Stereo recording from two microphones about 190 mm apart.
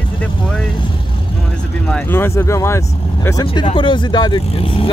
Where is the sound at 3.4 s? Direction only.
25° left (ahead or behind).